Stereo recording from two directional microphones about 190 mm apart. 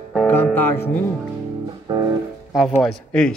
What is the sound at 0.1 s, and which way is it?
Music, 5° left (ahead or behind).